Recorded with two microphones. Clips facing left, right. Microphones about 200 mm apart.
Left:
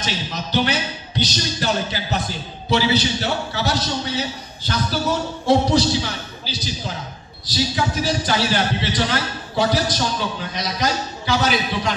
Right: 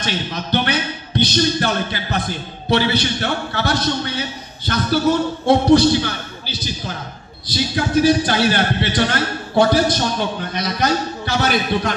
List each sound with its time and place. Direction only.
0.0 s a man's voice: 60° right (ahead or behind)